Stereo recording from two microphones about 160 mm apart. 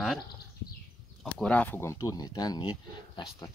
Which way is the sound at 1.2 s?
5° left (ahead or behind).